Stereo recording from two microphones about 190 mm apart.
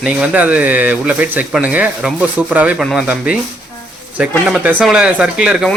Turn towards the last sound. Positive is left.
turn(degrees=0)  # may be behind; listen again after turning